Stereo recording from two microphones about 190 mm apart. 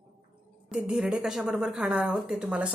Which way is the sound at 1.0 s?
5° right (ahead or behind).